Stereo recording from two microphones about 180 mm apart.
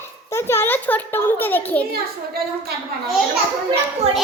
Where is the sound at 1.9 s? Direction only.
60° right (ahead or behind).